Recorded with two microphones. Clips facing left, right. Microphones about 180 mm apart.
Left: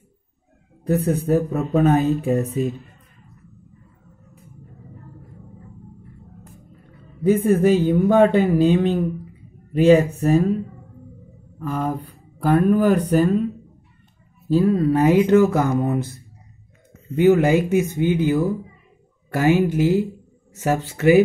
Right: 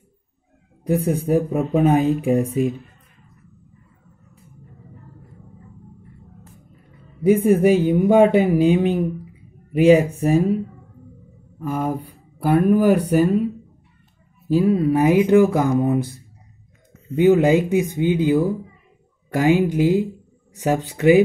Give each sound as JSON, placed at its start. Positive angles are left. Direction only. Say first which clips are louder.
{"t": 0.8, "sound": "speech", "louder": "even", "side_deg": -10}
{"t": 7.2, "sound": "speech", "louder": "right 1 dB", "side_deg": -10}
{"t": 11.6, "sound": "speech", "louder": "right 1 dB", "side_deg": -10}
{"t": 14.5, "sound": "speech", "louder": "even", "side_deg": -10}